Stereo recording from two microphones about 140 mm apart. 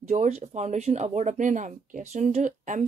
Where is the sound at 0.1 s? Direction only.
55° right (ahead or behind).